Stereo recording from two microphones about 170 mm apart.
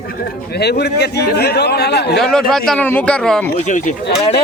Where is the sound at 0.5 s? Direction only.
75° left (ahead or behind).